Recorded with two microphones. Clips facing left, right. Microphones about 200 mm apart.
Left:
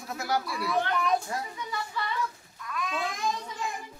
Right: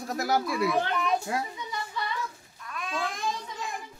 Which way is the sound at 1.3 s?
70° right (ahead or behind).